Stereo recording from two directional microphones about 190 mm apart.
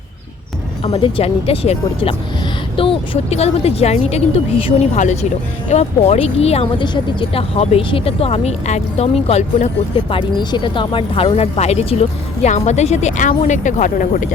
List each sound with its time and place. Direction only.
0.9 s speech: 30° left (ahead or behind)